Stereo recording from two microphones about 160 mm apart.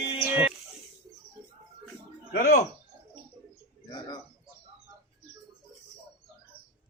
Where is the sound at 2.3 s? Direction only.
65° left (ahead or behind).